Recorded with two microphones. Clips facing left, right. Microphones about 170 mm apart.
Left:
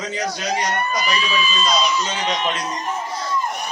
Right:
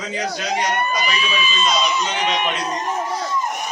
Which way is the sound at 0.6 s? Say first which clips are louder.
Right 1 dB; 20° right (ahead or behind).